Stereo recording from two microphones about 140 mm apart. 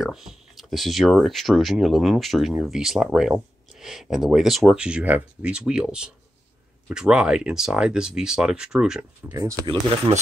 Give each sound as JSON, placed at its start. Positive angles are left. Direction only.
{"t": 0.0, "sound": "speech", "side_deg": -5}
{"t": 9.3, "sound": "speech", "side_deg": -25}